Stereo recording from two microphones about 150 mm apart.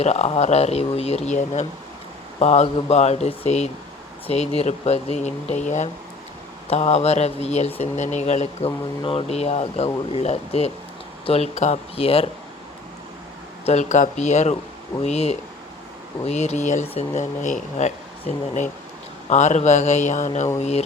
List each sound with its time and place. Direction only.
0.0 s speech: 45° left (ahead or behind)
13.7 s speech: 50° left (ahead or behind)